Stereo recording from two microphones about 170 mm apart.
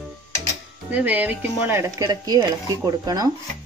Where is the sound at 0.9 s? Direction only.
10° right (ahead or behind).